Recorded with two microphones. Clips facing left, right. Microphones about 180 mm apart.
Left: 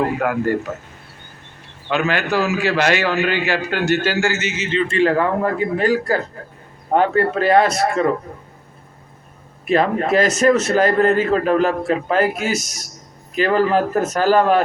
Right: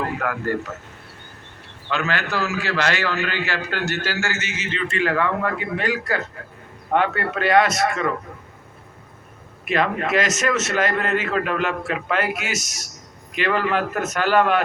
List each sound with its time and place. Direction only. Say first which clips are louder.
0.0 s a man's voice: left 6 dB; 15° left (ahead or behind)
1.9 s a man's voice: left 5 dB; 15° left (ahead or behind); by 8.1 s 30° left (ahead or behind)
9.6 s a man's voice: left 5 dB; 35° left (ahead or behind)